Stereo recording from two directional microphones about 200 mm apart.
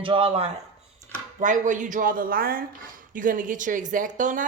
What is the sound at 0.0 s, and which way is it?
Speech, 30° right (ahead or behind).